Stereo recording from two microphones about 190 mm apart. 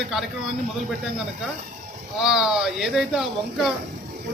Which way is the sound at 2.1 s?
Centre (ahead or behind).